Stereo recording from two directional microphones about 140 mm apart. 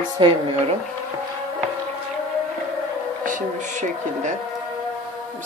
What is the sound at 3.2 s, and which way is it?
Speech, 65° right (ahead or behind).